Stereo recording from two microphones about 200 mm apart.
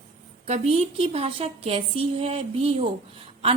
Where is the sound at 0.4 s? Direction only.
30° right (ahead or behind).